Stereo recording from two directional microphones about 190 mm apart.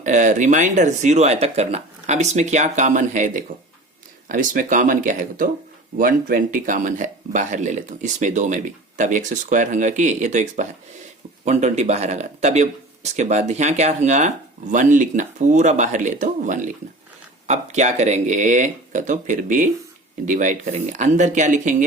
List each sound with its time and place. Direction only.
0.0 s speech: 40° right (ahead or behind)